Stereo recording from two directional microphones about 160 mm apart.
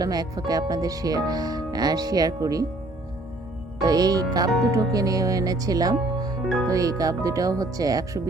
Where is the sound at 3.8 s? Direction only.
25° right (ahead or behind).